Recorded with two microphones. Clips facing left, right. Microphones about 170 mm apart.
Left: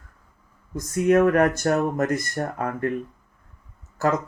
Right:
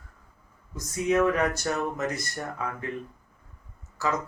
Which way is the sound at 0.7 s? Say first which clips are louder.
Left 7 dB; 55° left (ahead or behind).